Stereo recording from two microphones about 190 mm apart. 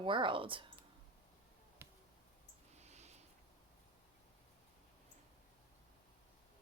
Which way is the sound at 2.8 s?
35° right (ahead or behind).